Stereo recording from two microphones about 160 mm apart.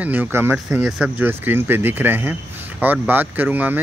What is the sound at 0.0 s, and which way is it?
Speech, 10° right (ahead or behind).